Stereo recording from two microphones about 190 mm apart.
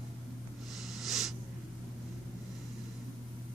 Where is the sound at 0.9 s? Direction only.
Centre (ahead or behind).